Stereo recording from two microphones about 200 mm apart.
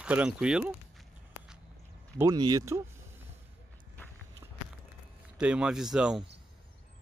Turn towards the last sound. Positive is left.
turn(degrees=-5)  # may be behind; listen again after turning